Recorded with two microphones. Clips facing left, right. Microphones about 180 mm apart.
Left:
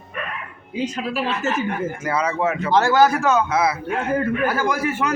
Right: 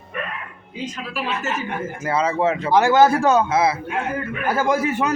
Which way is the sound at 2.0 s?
25° right (ahead or behind).